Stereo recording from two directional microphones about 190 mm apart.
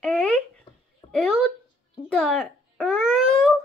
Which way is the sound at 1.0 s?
25° left (ahead or behind).